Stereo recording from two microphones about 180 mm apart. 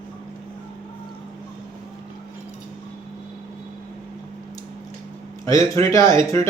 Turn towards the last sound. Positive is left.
turn(degrees=15)  # may be behind; listen again after turning